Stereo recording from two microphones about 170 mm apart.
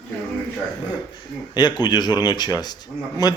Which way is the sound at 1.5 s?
25° left (ahead or behind).